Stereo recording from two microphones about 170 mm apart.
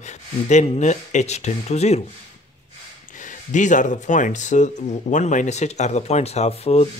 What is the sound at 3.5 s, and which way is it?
Speech, 45° left (ahead or behind).